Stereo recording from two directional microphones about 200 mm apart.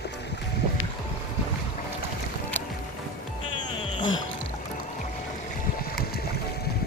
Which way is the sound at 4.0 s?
20° left (ahead or behind).